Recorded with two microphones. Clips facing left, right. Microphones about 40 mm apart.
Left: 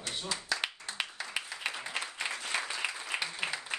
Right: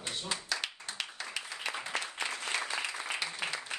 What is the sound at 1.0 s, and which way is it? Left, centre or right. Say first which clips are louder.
Clapping: left 3 dB; left.